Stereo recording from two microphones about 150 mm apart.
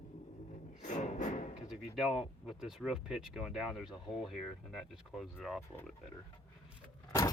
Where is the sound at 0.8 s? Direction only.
55° left (ahead or behind).